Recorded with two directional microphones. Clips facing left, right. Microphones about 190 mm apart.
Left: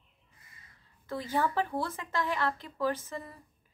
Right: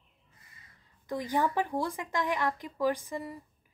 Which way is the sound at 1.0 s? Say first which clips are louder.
Right 1 dB; 15° right (ahead or behind).